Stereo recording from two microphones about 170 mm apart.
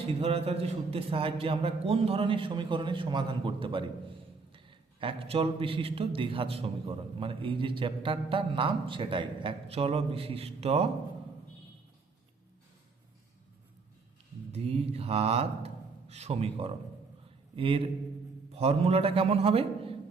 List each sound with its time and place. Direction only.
0.1 s a man's voice: 35° right (ahead or behind)
14.5 s a man's voice: 35° right (ahead or behind)